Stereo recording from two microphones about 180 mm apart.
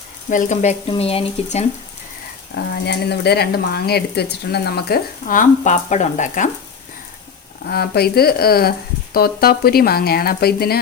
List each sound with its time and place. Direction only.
0.3 s speech: 45° left (ahead or behind)
2.6 s speech: 65° left (ahead or behind); by 6.5 s 45° left (ahead or behind)
7.7 s speech: 60° left (ahead or behind)